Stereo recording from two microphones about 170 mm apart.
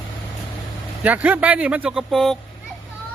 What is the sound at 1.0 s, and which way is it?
Speech, 10° right (ahead or behind).